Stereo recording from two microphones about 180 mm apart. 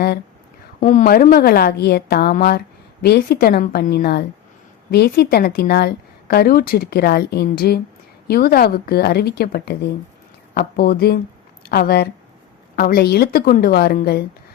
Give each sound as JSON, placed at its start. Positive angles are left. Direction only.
{"t": 0.8, "sound": "a woman's voice", "side_deg": 45}